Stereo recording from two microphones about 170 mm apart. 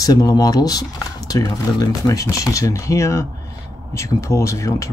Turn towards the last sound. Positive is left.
turn(degrees=20)  # may be behind; listen again after turning